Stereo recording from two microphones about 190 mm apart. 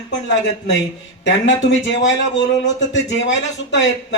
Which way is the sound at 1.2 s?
75° left (ahead or behind).